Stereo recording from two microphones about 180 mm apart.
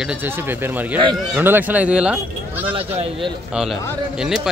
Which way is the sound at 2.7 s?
30° right (ahead or behind).